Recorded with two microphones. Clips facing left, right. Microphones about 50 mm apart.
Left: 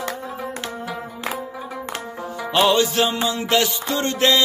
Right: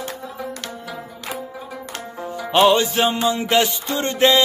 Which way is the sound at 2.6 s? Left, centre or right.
Right.